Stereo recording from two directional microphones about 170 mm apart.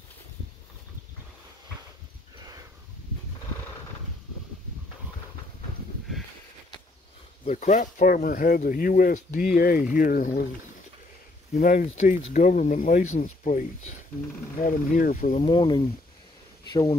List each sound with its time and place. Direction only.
7.4 s speech: 45° left (ahead or behind)
11.5 s speech: 50° left (ahead or behind)
14.2 s speech: 60° left (ahead or behind)
15.3 s speech: 30° left (ahead or behind)